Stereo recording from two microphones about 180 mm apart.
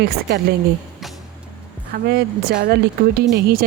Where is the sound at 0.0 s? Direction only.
65° right (ahead or behind).